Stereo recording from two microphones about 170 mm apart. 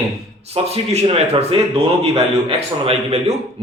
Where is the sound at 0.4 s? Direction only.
35° right (ahead or behind).